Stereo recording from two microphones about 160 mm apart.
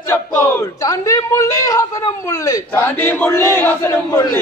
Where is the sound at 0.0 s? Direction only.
15° left (ahead or behind).